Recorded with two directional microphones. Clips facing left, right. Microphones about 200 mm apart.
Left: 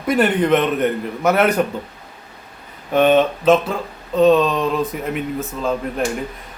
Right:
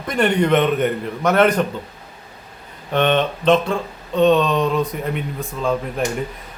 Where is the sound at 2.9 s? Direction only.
5° left (ahead or behind).